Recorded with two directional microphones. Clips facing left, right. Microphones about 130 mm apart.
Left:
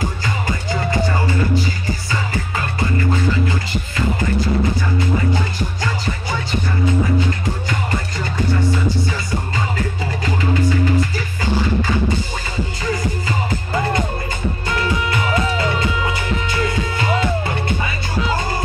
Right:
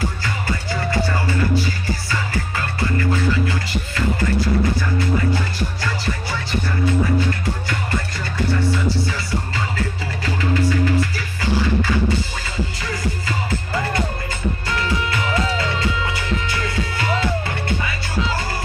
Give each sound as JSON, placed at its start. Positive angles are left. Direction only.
{"t": 0.2, "sound": "music", "side_deg": 20}
{"t": 5.8, "sound": "music", "side_deg": 20}
{"t": 14.7, "sound": "music", "side_deg": 20}